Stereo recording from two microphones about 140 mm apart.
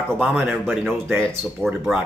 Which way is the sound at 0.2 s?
10° right (ahead or behind).